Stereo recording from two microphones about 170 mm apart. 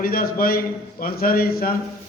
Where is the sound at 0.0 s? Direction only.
60° left (ahead or behind).